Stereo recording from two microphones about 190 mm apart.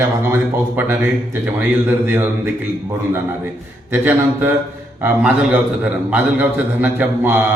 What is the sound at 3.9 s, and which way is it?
A man's voice, 10° right (ahead or behind).